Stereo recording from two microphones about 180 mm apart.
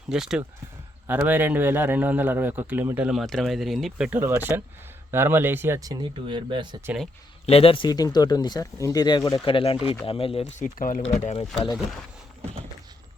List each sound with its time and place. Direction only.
0.1 s a man's voice: 5° right (ahead or behind); by 6.7 s 25° right (ahead or behind)
7.4 s speech: 30° left (ahead or behind)
10.6 s speech: 45° left (ahead or behind); by 11.8 s 30° left (ahead or behind)